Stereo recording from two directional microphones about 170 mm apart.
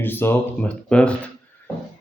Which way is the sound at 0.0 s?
10° left (ahead or behind).